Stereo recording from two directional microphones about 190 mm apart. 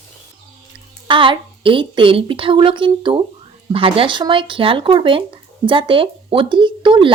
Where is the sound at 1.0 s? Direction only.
25° right (ahead or behind).